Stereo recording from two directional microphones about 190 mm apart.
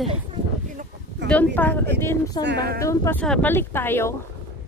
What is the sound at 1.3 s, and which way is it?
Speech, 10° left (ahead or behind).